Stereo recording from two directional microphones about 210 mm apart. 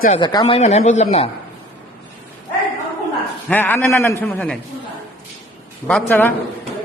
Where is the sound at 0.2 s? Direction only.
20° left (ahead or behind).